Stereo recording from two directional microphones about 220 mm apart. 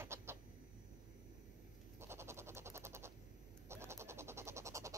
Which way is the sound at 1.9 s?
10° right (ahead or behind).